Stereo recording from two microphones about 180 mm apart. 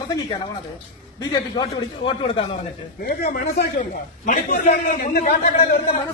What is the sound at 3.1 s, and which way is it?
A man's voice, 55° left (ahead or behind).